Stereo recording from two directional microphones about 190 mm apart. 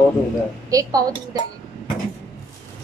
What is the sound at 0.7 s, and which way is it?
Speech, 20° right (ahead or behind).